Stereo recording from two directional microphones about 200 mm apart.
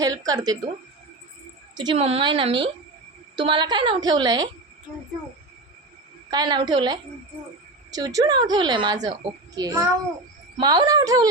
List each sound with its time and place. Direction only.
0.0 s a woman's voice: 20° right (ahead or behind)
1.7 s a woman's voice: 20° right (ahead or behind)
6.3 s a woman's voice: 20° right (ahead or behind)